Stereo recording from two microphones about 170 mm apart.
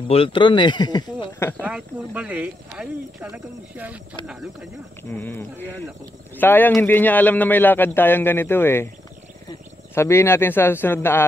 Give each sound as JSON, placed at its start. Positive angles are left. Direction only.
{"t": 0.1, "sound": "speech", "side_deg": 30}
{"t": 1.6, "sound": "speech", "side_deg": -5}
{"t": 5.1, "sound": "speech", "side_deg": 10}
{"t": 9.9, "sound": "speech", "side_deg": 15}